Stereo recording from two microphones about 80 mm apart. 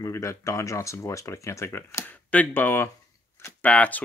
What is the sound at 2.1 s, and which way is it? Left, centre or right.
Speech, centre.